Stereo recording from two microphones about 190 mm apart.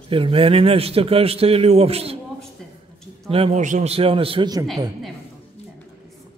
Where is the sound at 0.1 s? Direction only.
30° right (ahead or behind).